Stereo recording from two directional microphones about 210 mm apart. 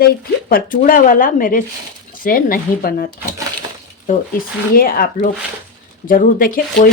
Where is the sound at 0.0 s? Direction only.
40° left (ahead or behind).